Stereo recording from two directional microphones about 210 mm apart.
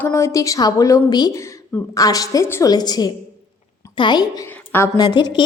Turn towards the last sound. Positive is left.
turn(degrees=20)  # may be behind; listen again after turning